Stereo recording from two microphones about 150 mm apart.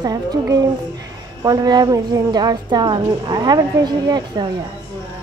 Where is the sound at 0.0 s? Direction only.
25° right (ahead or behind).